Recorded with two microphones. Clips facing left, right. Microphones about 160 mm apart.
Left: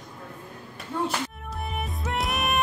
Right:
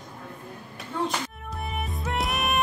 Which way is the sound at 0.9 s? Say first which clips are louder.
Left 1 dB; 10° left (ahead or behind).